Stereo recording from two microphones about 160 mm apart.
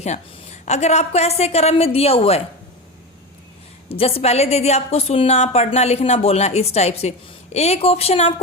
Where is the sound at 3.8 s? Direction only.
35° left (ahead or behind).